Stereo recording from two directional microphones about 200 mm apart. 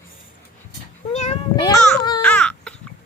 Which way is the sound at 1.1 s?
35° left (ahead or behind).